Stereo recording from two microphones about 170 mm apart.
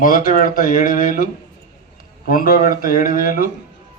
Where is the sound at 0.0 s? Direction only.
55° left (ahead or behind).